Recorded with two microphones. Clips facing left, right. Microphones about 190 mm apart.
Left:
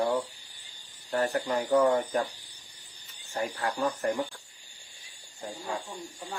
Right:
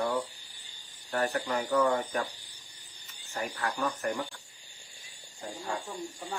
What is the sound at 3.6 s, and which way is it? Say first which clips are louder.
Mantra: left 2 dB; 25° left (ahead or behind).